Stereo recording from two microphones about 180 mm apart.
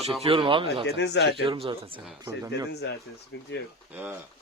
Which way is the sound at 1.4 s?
30° right (ahead or behind).